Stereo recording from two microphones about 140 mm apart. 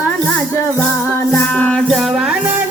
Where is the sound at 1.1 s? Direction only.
15° left (ahead or behind).